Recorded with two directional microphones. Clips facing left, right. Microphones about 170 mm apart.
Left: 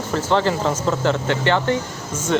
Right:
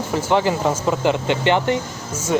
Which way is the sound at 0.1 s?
15° right (ahead or behind).